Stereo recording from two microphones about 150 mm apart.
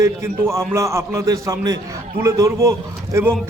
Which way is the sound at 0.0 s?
20° right (ahead or behind).